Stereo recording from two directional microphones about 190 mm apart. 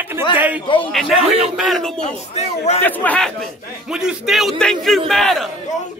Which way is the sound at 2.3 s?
35° left (ahead or behind).